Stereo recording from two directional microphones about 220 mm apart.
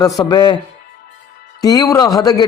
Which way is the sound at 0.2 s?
20° left (ahead or behind).